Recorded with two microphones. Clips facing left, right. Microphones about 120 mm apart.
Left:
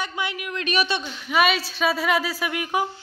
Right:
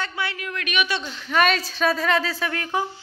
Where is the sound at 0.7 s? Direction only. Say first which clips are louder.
Left 2 dB; 35° left (ahead or behind).